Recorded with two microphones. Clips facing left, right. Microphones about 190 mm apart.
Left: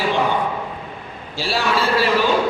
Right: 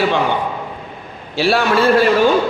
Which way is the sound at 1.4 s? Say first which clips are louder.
Right 6 dB; 60° right (ahead or behind).